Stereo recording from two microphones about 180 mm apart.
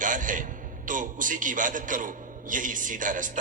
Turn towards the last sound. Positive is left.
turn(degrees=-45)  # may be behind; listen again after turning